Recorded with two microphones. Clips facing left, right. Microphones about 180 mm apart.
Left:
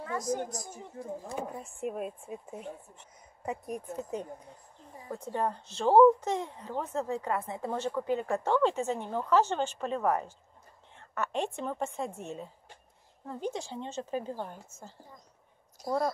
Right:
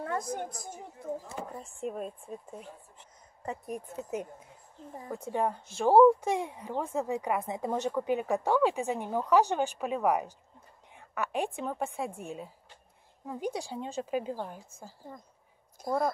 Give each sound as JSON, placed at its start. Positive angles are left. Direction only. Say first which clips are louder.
{"t": 0.0, "sound": "a woman's voice", "louder": "left 1 dB", "side_deg": -55}
{"t": 1.6, "sound": "a woman's voice", "louder": "left 1 dB", "side_deg": 5}
{"t": 15.8, "sound": "speech", "louder": "right 1 dB", "side_deg": -55}